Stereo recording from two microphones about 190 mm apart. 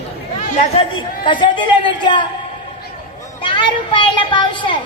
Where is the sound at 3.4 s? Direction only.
25° left (ahead or behind).